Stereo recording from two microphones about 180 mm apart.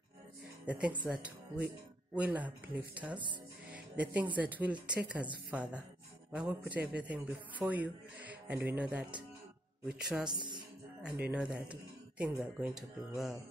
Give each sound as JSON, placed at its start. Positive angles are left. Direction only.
{"t": 0.7, "sound": "speech", "side_deg": -5}
{"t": 2.1, "sound": "speech", "side_deg": -10}
{"t": 10.3, "sound": "speech", "side_deg": -25}
{"t": 11.0, "sound": "speech", "side_deg": -5}